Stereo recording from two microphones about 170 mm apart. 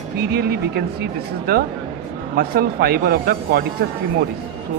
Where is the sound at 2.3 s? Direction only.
65° right (ahead or behind).